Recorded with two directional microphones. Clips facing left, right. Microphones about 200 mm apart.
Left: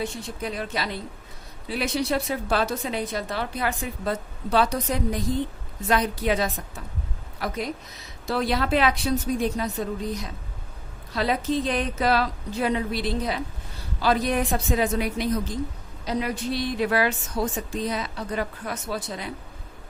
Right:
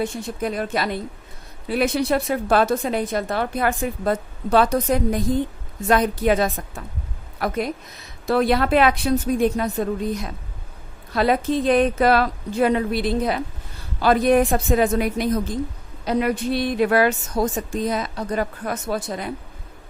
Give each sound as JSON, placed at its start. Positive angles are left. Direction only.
{"t": 0.0, "sound": "a woman's voice", "side_deg": -50}